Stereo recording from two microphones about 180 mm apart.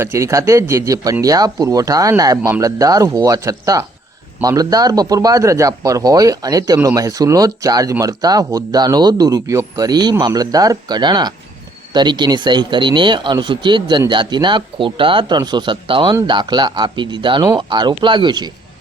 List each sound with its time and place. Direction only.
0.0 s speech: 15° right (ahead or behind)